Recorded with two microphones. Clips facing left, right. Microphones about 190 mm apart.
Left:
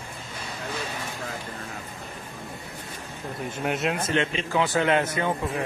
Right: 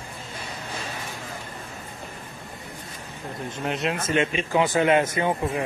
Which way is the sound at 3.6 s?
Centre (ahead or behind).